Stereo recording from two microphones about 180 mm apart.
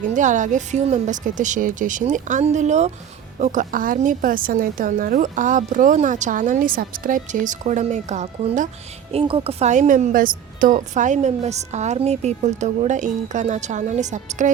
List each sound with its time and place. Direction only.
0.1 s a woman's voice: 45° right (ahead or behind)
9.1 s a woman's voice: 30° right (ahead or behind)